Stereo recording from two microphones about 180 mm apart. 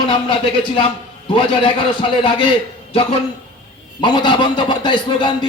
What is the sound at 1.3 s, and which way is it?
A man's voice, 30° left (ahead or behind).